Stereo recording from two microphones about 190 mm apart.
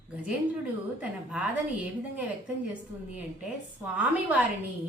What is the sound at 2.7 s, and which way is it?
A woman's voice, 5° right (ahead or behind).